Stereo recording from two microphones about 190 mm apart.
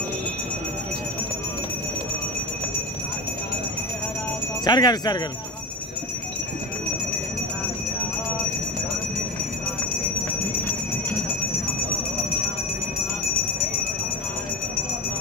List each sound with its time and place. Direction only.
4.6 s speech: 20° left (ahead or behind)